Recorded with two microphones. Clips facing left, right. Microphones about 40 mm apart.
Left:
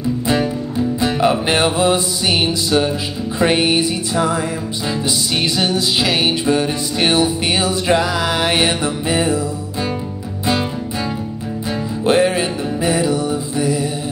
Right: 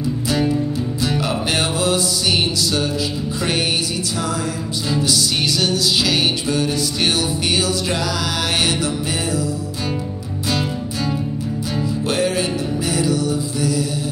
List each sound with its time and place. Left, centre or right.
1.0 s music: left
5.6 s music: left
12.1 s music: left